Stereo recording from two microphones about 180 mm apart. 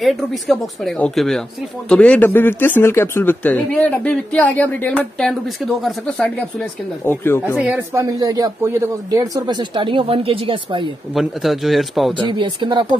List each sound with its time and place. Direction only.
0.0 s speech: centre (ahead or behind)
7.4 s speech: 10° right (ahead or behind); by 10.9 s 25° right (ahead or behind)
11.1 s speech: centre (ahead or behind)
12.3 s speech: 25° right (ahead or behind)